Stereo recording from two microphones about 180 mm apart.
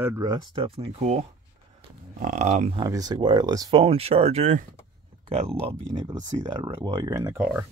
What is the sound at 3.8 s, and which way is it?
Speech, 35° right (ahead or behind).